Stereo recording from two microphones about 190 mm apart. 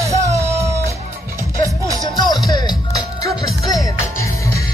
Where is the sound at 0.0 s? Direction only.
15° right (ahead or behind).